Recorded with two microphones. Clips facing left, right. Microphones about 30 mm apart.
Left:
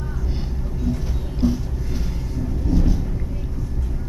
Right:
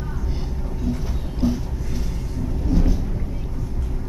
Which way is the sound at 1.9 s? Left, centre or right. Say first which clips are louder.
Left 1 dB; centre.